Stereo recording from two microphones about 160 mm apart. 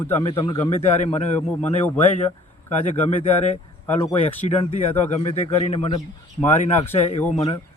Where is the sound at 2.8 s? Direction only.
45° left (ahead or behind).